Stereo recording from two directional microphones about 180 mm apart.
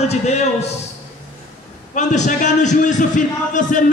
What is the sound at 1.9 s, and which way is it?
A man's voice, 40° left (ahead or behind).